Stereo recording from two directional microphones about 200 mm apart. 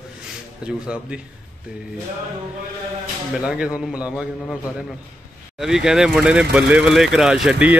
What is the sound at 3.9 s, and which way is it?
Speech, 5° right (ahead or behind).